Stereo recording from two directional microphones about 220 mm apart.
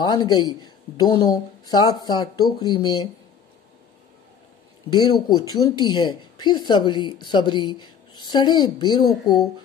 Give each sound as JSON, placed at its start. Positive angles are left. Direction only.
{"t": 0.0, "sound": "speech", "side_deg": 20}
{"t": 4.8, "sound": "speech", "side_deg": 20}